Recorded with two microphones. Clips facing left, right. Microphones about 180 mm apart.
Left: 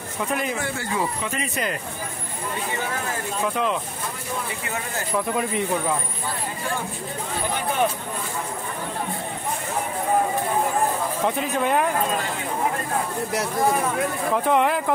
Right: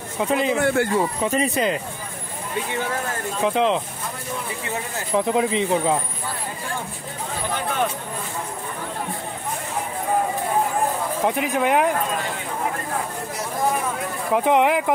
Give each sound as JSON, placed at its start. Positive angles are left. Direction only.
{"t": 0.3, "sound": "speech", "side_deg": -25}
{"t": 0.6, "sound": "speech", "side_deg": -55}
{"t": 1.2, "sound": "speech", "side_deg": -35}
{"t": 3.4, "sound": "speech", "side_deg": -25}
{"t": 11.4, "sound": "speech", "side_deg": -10}
{"t": 14.3, "sound": "speech", "side_deg": -15}